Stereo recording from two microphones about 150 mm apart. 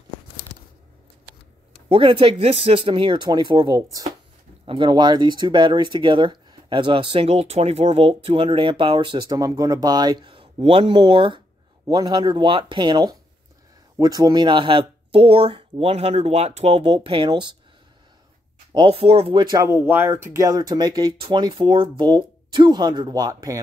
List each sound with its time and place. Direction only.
1.9 s speech: 35° right (ahead or behind)
18.7 s speech: 35° right (ahead or behind)
19.5 s speech: 20° right (ahead or behind)